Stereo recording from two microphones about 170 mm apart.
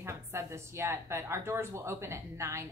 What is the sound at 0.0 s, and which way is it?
Speech, 15° right (ahead or behind).